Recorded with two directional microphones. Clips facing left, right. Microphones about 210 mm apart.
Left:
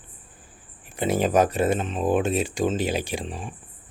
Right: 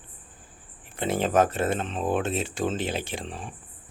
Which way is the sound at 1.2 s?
15° left (ahead or behind).